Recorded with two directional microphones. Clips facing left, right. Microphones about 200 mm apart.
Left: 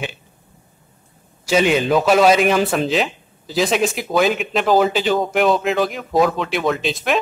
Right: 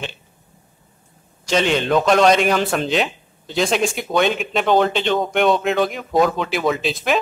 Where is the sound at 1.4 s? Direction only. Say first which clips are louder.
Left 2 dB; 5° left (ahead or behind).